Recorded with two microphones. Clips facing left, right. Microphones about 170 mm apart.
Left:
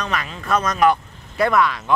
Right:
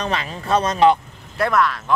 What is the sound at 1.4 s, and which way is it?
Speech, centre (ahead or behind).